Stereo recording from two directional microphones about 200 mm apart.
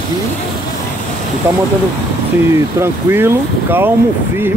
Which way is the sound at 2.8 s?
10° right (ahead or behind).